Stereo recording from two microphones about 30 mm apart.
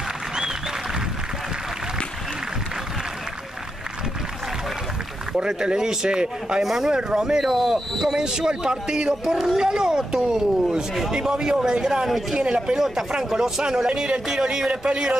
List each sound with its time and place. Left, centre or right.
5.4 s speech: right
6.6 s speech: centre
7.3 s speech: centre
8.3 s speech: right
12.7 s speech: centre
13.8 s speech: right
14.2 s speech: right
14.7 s speech: right